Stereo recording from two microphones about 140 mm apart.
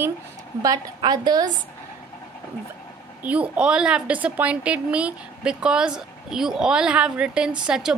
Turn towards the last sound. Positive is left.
turn(degrees=-5)  # may be behind; listen again after turning